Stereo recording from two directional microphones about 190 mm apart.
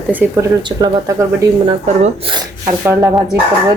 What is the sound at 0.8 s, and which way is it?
A woman's voice, 20° right (ahead or behind).